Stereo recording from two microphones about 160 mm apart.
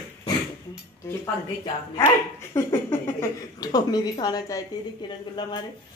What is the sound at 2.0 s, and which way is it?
Speech, 15° left (ahead or behind).